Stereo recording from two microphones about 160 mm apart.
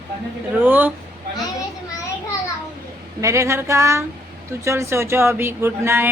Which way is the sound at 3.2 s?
20° right (ahead or behind).